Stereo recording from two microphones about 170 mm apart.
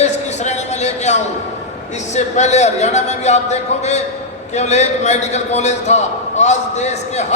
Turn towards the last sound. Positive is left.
turn(degrees=40)  # may be behind; listen again after turning